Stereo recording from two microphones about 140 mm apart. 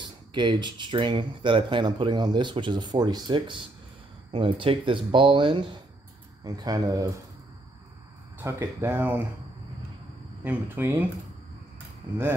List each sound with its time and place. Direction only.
0.3 s speech: 35° right (ahead or behind)
8.4 s speech: 15° right (ahead or behind)
10.4 s speech: 15° right (ahead or behind)